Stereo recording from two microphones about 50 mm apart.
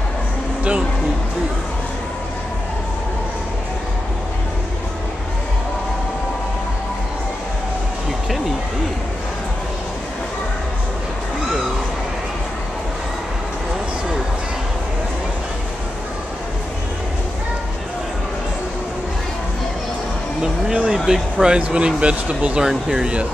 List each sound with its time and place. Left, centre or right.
20.4 s a sound: centre
21.5 s speech: right
22.7 s speech: centre